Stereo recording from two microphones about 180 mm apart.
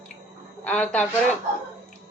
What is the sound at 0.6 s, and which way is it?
Speech, 5° left (ahead or behind).